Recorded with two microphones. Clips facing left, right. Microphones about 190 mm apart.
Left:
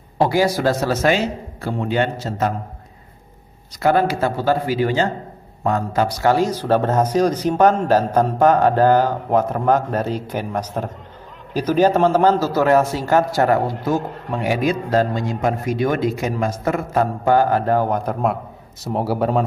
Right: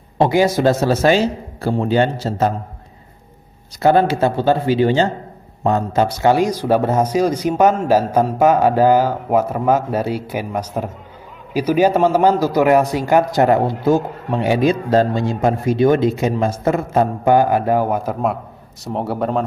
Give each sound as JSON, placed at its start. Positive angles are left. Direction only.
{"t": 0.2, "sound": "a man's voice", "side_deg": -20}
{"t": 3.8, "sound": "a man's voice", "side_deg": -25}